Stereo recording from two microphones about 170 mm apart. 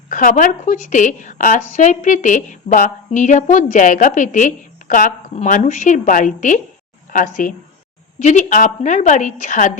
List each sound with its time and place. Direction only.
0.1 s a woman's voice: 50° left (ahead or behind)